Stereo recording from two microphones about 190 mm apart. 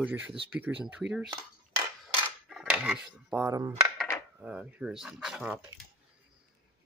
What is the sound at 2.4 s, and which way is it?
Cutlery, centre (ahead or behind).